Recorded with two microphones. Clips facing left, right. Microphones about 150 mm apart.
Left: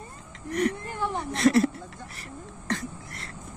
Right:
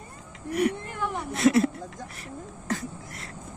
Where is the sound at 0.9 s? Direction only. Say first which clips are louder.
Left 1 dB; 30° left (ahead or behind).